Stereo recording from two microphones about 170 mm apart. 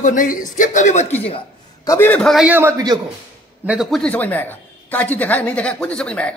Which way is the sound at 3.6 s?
5° right (ahead or behind).